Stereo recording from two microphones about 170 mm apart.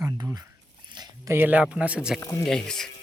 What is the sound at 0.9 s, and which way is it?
Speech, 25° right (ahead or behind).